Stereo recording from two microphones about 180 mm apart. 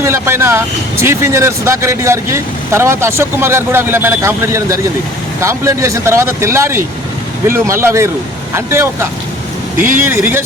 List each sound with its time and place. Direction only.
0.0 s speech: 15° right (ahead or behind)